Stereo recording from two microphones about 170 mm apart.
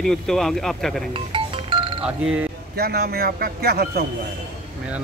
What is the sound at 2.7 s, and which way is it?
A man's voice, 65° right (ahead or behind).